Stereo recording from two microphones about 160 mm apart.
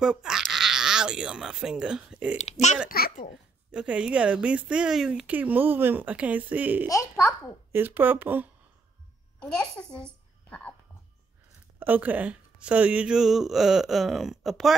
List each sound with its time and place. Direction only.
0.0 s speech: 5° right (ahead or behind)
2.3 s speech: 45° left (ahead or behind)
2.9 s a child's voice: 70° left (ahead or behind)
3.7 s speech: 5° right (ahead or behind)
6.9 s a child's voice: 20° left (ahead or behind)
7.7 s speech: 10° right (ahead or behind)
9.4 s a child's voice: 5° left (ahead or behind)
11.8 s speech: 10° right (ahead or behind)